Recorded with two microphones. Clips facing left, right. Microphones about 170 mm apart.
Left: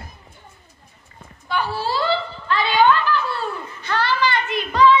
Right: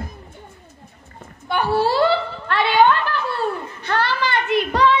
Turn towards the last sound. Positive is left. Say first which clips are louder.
# right 2 dB
turn(degrees=-55)  # may be behind; listen again after turning